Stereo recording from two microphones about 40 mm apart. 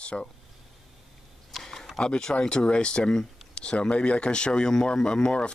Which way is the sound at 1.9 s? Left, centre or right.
Left.